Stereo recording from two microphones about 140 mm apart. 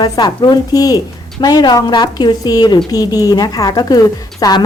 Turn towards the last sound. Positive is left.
turn(degrees=25)  # may be behind; listen again after turning